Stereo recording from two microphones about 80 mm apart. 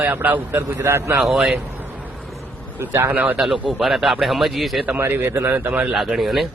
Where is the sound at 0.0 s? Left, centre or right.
Right.